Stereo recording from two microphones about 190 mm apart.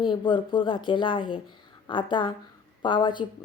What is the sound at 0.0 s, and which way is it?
A woman's voice, 25° left (ahead or behind).